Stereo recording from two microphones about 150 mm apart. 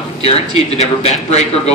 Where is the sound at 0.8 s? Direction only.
45° left (ahead or behind).